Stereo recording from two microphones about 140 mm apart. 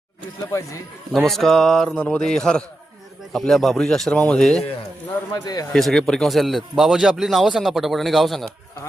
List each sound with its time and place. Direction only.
1.1 s a man's voice: centre (ahead or behind)
5.3 s a man's voice: 30° left (ahead or behind)
5.7 s a man's voice: 5° left (ahead or behind)